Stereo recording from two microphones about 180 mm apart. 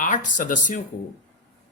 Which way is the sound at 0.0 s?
45° left (ahead or behind).